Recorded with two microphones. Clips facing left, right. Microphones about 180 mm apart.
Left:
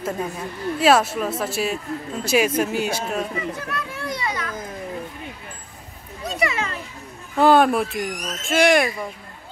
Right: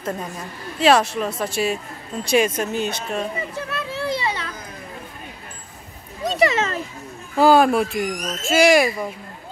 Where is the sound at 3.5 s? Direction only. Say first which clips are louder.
Right 2 dB; 30° right (ahead or behind).